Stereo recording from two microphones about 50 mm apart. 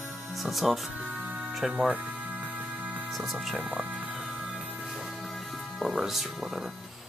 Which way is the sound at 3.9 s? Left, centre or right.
Right.